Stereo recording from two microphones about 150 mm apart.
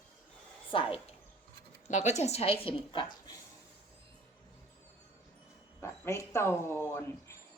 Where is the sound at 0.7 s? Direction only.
35° left (ahead or behind).